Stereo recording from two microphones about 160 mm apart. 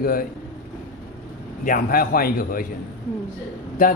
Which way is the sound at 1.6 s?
65° left (ahead or behind).